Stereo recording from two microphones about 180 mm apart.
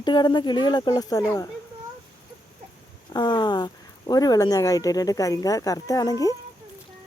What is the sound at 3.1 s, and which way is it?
Speech, 25° left (ahead or behind).